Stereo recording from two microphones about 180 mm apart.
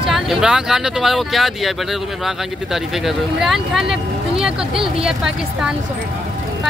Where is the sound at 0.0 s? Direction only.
5° right (ahead or behind).